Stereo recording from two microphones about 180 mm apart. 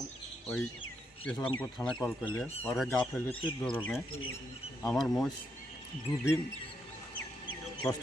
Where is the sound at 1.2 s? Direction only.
5° left (ahead or behind).